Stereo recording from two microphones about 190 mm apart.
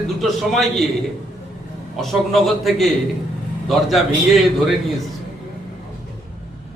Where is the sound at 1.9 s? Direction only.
Centre (ahead or behind).